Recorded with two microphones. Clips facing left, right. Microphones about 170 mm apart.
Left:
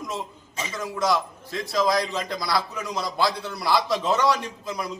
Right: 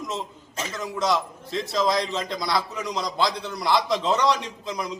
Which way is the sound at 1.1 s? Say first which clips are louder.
Right 1 dB; 20° right (ahead or behind).